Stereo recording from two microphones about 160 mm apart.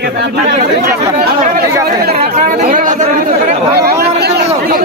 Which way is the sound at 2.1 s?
45° right (ahead or behind).